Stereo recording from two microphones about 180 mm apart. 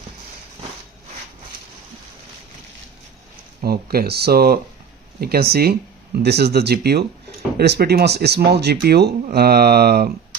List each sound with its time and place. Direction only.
3.6 s speech: 60° right (ahead or behind)